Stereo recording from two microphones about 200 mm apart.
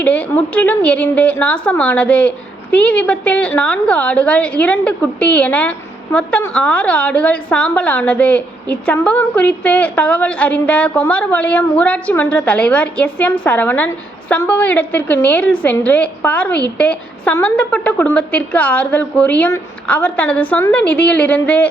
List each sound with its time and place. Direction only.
0.0 s a woman's voice: 5° left (ahead or behind)